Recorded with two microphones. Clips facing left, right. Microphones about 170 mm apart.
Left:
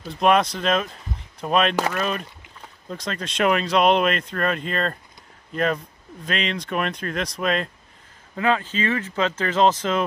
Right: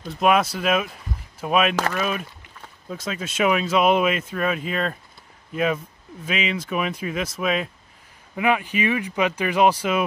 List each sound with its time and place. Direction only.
0.0 s speech: 5° right (ahead or behind)